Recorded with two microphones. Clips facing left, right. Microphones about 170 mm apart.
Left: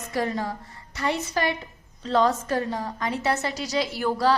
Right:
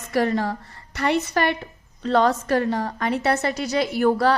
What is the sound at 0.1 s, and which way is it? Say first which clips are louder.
A woman's voice: right 6 dB; 70° right (ahead or behind).